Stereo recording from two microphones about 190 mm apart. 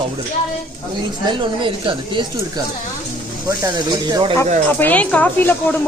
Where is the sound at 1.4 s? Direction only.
25° right (ahead or behind).